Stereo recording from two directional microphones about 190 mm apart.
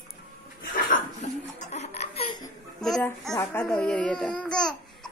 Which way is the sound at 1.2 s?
35° left (ahead or behind).